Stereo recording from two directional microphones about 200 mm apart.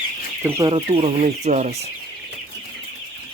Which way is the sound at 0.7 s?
30° right (ahead or behind).